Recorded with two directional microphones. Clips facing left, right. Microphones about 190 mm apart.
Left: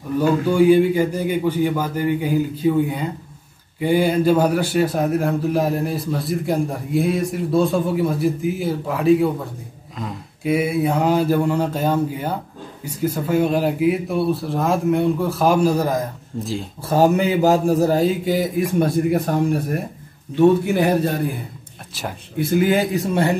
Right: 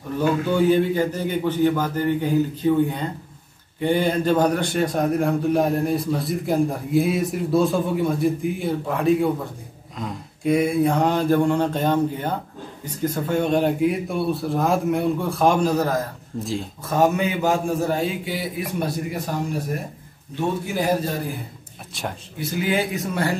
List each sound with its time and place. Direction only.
0.5 s a man's voice: 10° left (ahead or behind)
16.3 s a man's voice: centre (ahead or behind)
16.8 s a man's voice: 35° left (ahead or behind); by 19.3 s 55° left (ahead or behind)
20.3 s a man's voice: 60° left (ahead or behind)
22.4 s speech: 50° left (ahead or behind)